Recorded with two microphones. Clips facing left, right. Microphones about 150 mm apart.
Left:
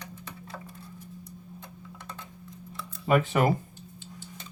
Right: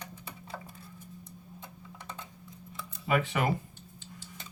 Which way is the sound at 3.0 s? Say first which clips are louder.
Left 5 dB; 40° left (ahead or behind).